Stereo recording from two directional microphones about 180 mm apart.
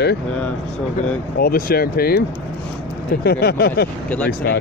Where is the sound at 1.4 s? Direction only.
55° left (ahead or behind).